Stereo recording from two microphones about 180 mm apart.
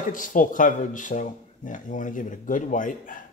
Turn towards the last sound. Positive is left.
turn(degrees=45)  # may be behind; listen again after turning